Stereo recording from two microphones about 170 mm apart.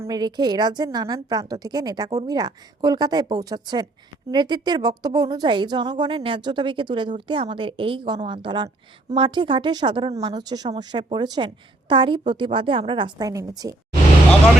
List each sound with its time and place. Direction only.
0.0 s a woman's voice: 25° right (ahead or behind)